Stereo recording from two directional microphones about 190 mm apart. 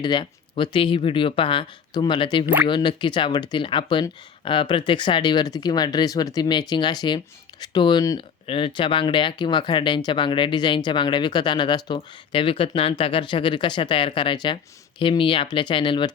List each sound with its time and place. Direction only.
0.0 s speech: 25° left (ahead or behind)